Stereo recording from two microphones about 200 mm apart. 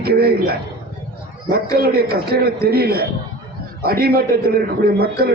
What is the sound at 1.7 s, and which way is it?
A man's voice, 50° right (ahead or behind).